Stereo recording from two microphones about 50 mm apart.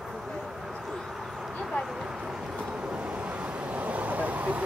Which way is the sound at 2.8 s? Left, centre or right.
Right.